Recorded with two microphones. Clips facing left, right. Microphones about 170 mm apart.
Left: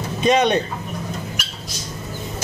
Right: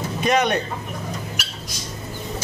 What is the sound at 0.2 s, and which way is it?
Speech, 25° left (ahead or behind).